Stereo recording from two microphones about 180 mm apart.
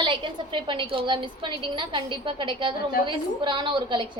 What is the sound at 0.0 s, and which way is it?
A woman's voice, 25° right (ahead or behind).